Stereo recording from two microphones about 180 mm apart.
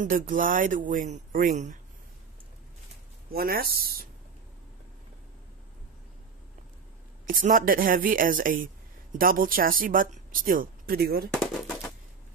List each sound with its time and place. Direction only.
0.0 s speech: 50° right (ahead or behind)
3.3 s speech: 55° right (ahead or behind)
7.2 s speech: 50° right (ahead or behind)
11.3 s machine gun: centre (ahead or behind)